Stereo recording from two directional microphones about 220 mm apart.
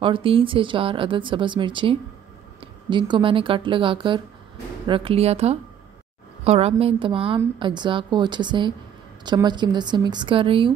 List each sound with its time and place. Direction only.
0.0 s a woman's voice: 25° right (ahead or behind)